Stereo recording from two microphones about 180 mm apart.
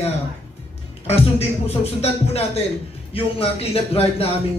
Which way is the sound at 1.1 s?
35° left (ahead or behind).